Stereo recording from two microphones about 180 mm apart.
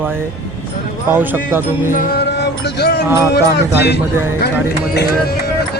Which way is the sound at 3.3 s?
65° left (ahead or behind).